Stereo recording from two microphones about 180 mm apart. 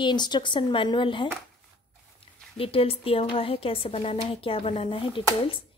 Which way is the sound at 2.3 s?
35° left (ahead or behind).